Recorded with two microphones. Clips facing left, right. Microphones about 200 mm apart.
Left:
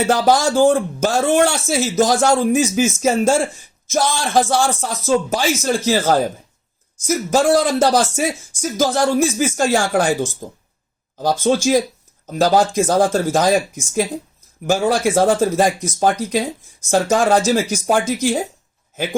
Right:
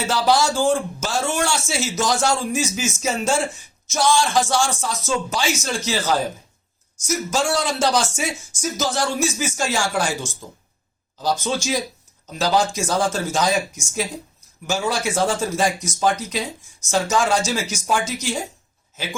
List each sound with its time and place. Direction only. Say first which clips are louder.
0.0 s speech: left 4 dB; 55° left (ahead or behind)